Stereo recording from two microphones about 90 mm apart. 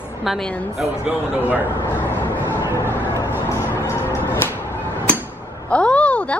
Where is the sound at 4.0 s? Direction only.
30° left (ahead or behind).